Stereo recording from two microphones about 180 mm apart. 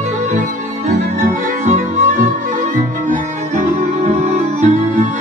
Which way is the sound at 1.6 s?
45° right (ahead or behind).